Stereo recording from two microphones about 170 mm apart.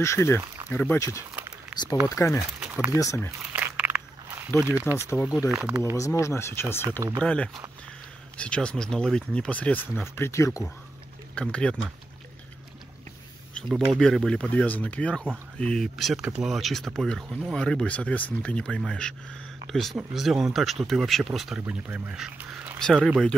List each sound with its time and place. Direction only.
0.0 s speech: 15° left (ahead or behind)
1.3 s a sound: 10° right (ahead or behind)
2.0 s speech: 20° left (ahead or behind)
2.6 s a sound: 5° right (ahead or behind)
3.0 s speech: 15° left (ahead or behind)
3.5 s walk: 10° right (ahead or behind)
4.6 s speech: 10° right (ahead or behind)
4.9 s speech: 15° left (ahead or behind)
11.4 s speech: 5° left (ahead or behind)
13.6 s speech: centre (ahead or behind)